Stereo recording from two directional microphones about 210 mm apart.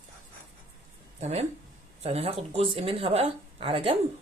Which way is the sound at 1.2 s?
30° right (ahead or behind).